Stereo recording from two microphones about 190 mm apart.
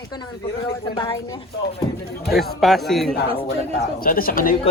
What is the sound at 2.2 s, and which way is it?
Speech, centre (ahead or behind).